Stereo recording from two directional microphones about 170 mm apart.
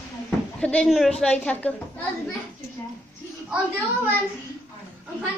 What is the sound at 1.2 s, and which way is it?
Speech, 10° left (ahead or behind).